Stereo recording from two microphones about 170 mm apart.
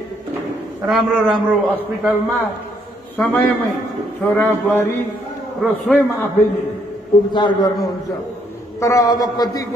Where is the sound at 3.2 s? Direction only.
10° left (ahead or behind).